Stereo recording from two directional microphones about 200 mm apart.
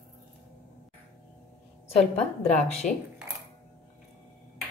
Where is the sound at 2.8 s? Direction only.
40° left (ahead or behind).